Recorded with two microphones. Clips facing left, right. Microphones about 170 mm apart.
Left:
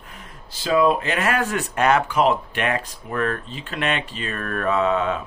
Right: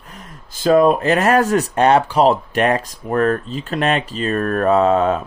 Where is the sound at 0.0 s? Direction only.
40° right (ahead or behind).